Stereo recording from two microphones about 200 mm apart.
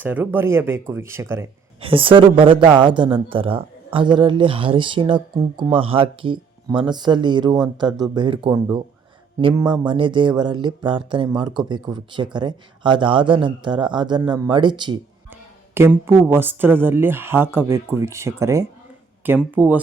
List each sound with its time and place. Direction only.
0.0 s speech: 10° right (ahead or behind)
1.8 s speech: 25° right (ahead or behind)
15.3 s speech: 10° right (ahead or behind)